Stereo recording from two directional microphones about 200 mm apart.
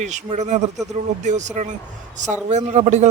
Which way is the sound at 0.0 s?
35° right (ahead or behind).